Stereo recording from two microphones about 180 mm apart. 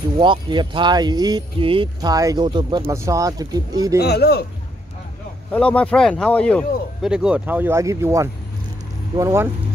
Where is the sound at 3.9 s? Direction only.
65° left (ahead or behind).